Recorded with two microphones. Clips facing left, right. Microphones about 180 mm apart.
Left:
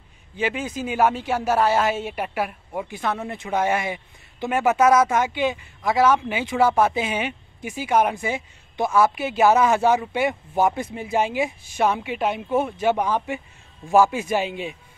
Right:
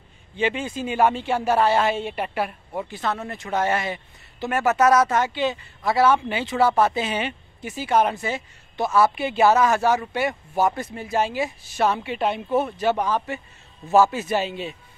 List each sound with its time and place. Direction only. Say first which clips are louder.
0.4 s a woman's voice: right 1 dB; 5° left (ahead or behind)